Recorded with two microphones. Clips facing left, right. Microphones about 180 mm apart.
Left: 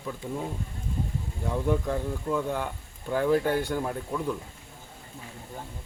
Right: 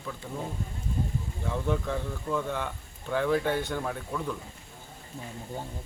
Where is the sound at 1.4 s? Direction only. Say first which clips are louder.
Left 3 dB; 10° left (ahead or behind).